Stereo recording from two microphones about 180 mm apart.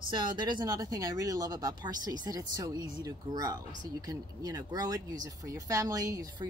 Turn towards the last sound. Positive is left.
turn(degrees=-20)  # may be behind; listen again after turning